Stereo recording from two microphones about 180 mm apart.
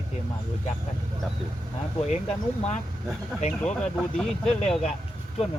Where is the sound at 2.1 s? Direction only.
35° left (ahead or behind).